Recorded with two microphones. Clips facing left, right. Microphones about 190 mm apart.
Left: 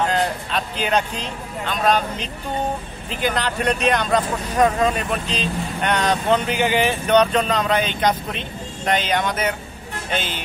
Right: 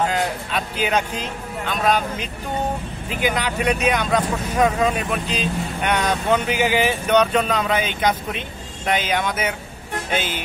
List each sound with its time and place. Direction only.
0.1 s speech: 10° right (ahead or behind)